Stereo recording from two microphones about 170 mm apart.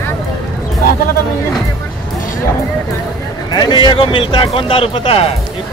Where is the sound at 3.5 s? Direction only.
25° left (ahead or behind).